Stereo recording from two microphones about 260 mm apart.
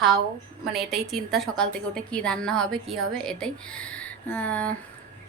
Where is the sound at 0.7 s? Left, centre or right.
Centre.